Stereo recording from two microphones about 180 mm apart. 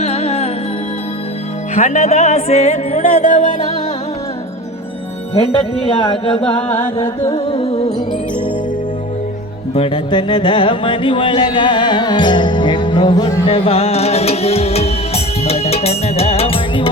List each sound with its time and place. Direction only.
0.0 s music: 35° left (ahead or behind)
1.7 s music: 40° left (ahead or behind)
5.3 s music: 30° left (ahead or behind)
6.8 s music: 15° left (ahead or behind)
7.3 s music: 35° left (ahead or behind)
9.7 s music: 30° left (ahead or behind)